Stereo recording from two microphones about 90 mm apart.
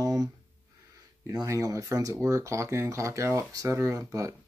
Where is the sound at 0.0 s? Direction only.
40° right (ahead or behind).